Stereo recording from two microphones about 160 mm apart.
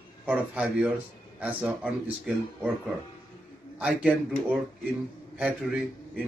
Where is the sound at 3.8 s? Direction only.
10° right (ahead or behind).